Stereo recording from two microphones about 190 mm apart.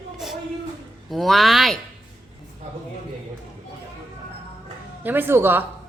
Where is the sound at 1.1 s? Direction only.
Centre (ahead or behind).